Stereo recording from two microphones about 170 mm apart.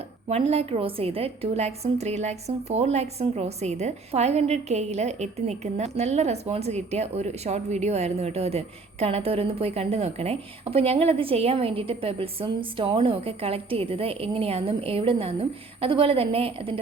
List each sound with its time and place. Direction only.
0.3 s a woman's voice: 35° right (ahead or behind)